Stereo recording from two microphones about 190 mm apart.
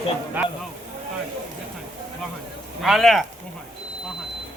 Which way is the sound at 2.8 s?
Centre (ahead or behind).